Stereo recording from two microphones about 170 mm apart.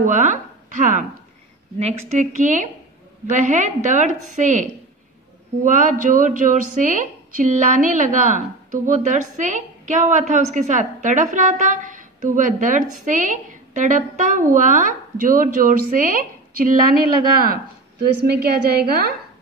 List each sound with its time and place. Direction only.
0.0 s a woman's voice: 45° right (ahead or behind); by 19.1 s 65° right (ahead or behind)